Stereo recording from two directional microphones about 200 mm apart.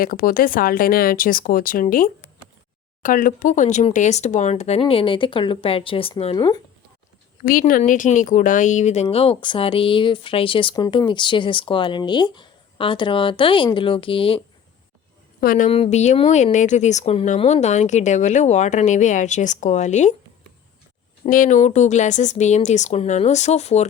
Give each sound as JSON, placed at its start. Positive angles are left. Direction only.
{"t": 0.0, "sound": "speech", "side_deg": 45}
{"t": 7.4, "sound": "speech", "side_deg": 45}
{"t": 15.4, "sound": "speech", "side_deg": 40}
{"t": 21.2, "sound": "speech", "side_deg": 40}